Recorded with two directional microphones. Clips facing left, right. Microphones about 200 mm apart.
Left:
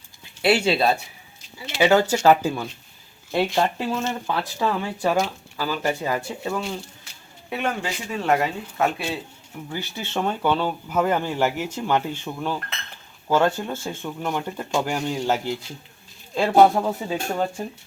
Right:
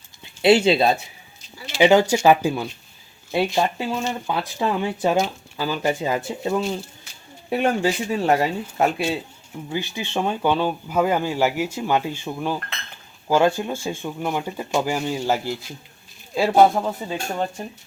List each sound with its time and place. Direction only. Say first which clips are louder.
0.4 s speech: right 4 dB; 20° right (ahead or behind)
7.5 s speech: right 6 dB; 30° right (ahead or behind)
9.6 s speech: right 4 dB; 15° right (ahead or behind); by 17.7 s 5° left (ahead or behind)